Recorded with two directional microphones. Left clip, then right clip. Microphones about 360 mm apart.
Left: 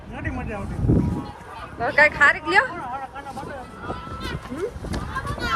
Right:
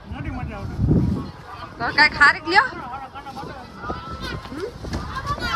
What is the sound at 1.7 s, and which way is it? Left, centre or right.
Speech, centre.